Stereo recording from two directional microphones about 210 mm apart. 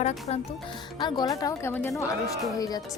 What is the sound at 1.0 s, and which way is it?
A woman's voice, 20° left (ahead or behind).